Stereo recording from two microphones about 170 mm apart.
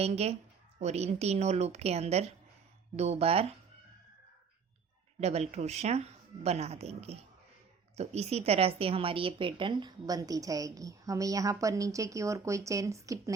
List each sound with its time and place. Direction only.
0.0 s speech: 40° right (ahead or behind)
5.2 s speech: 40° right (ahead or behind); by 13.3 s 20° right (ahead or behind)